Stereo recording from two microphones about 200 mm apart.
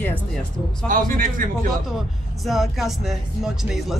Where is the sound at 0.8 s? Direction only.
45° right (ahead or behind).